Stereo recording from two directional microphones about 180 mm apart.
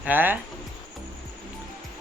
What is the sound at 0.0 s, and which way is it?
Speech, 10° right (ahead or behind).